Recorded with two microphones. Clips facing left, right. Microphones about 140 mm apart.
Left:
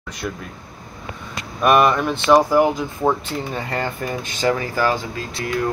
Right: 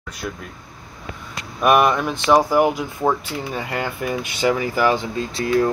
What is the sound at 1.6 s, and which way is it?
Speech, 5° right (ahead or behind).